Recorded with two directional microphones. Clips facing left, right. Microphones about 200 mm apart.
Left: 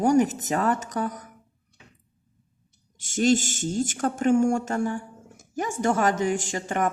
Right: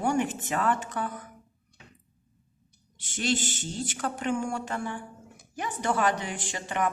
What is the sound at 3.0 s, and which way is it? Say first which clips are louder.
A woman's voice: left 8 dB; 45° left (ahead or behind).